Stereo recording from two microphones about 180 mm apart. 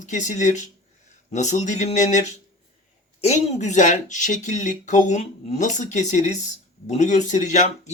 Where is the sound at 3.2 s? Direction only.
40° left (ahead or behind).